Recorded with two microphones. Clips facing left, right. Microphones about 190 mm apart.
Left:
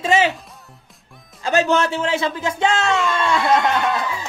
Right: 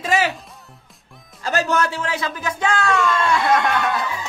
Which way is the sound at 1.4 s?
25° left (ahead or behind).